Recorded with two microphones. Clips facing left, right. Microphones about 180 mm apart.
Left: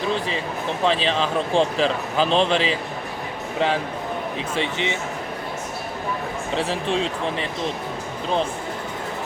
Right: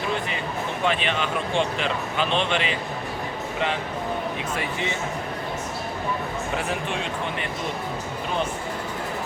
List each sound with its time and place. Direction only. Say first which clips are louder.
0.9 s speech: left 4 dB; 30° left (ahead or behind)
4.5 s speech: left 7 dB; 25° left (ahead or behind)
6.6 s speech: left 5 dB; 30° left (ahead or behind)